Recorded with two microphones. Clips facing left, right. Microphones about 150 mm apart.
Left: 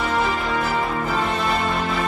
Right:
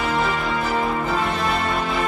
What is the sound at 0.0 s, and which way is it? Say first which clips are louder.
Music: even; centre (ahead or behind).